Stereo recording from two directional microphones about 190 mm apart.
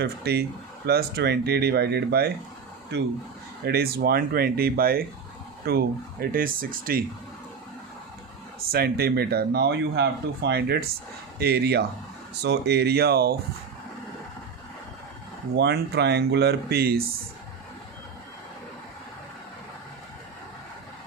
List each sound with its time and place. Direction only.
0.0 s speech: 60° right (ahead or behind)
3.7 s speech: 55° right (ahead or behind)
8.7 s speech: 55° right (ahead or behind)
15.5 s speech: 60° right (ahead or behind)